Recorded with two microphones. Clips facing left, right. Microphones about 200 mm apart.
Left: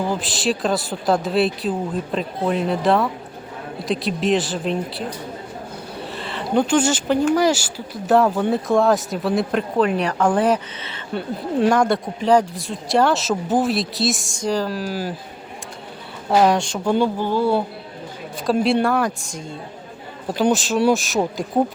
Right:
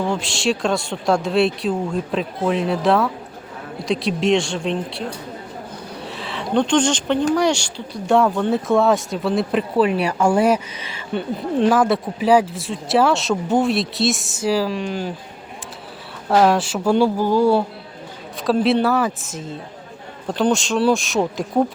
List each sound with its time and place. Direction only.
0.0 s speech: centre (ahead or behind)
6.0 s a sound: centre (ahead or behind)
7.3 s speech: 5° left (ahead or behind)
16.3 s speech: centre (ahead or behind)
18.4 s speech: centre (ahead or behind)